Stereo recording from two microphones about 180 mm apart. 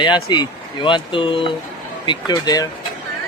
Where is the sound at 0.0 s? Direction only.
25° left (ahead or behind).